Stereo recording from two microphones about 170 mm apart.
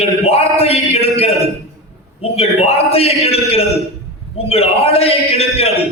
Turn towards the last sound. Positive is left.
turn(degrees=35)  # may be behind; listen again after turning